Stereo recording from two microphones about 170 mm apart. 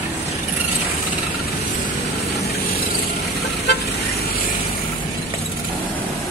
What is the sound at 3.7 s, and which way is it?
Vehicle, 75° left (ahead or behind).